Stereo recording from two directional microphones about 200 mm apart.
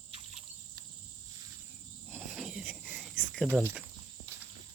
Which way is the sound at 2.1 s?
5° right (ahead or behind).